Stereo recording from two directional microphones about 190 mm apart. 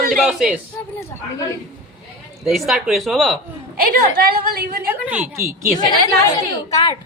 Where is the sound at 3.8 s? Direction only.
50° right (ahead or behind).